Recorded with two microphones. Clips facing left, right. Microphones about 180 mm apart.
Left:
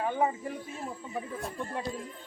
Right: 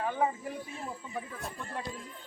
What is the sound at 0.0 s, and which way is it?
Speech, 20° left (ahead or behind).